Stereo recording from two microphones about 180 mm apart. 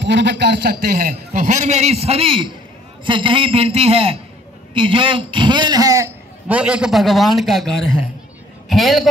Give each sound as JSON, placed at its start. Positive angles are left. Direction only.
{"t": 0.0, "sound": "a man's voice", "side_deg": -75}